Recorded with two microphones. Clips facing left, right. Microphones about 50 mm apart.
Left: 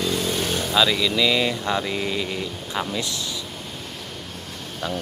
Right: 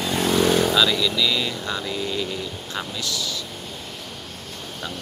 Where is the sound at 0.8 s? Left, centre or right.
Centre.